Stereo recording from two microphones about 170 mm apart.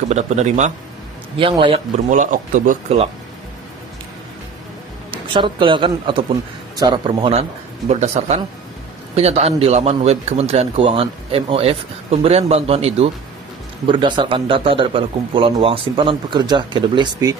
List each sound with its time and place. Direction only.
0.1 s speech: 45° right (ahead or behind)
1.4 s a man's voice: 30° right (ahead or behind)
2.0 s speech: 50° right (ahead or behind)
5.1 s a man's voice: 30° right (ahead or behind)